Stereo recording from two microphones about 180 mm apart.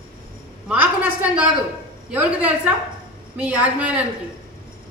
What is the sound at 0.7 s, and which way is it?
A woman's voice, 5° right (ahead or behind).